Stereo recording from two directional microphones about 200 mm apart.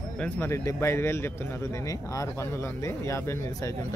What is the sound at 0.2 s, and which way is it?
A man's voice, 10° left (ahead or behind).